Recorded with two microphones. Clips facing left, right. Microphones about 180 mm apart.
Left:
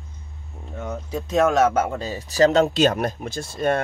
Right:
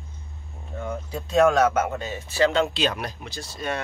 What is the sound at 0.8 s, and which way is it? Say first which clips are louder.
Speech: left 2 dB; 20° left (ahead or behind).